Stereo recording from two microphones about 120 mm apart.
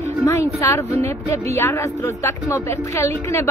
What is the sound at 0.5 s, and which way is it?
Speech, 25° left (ahead or behind).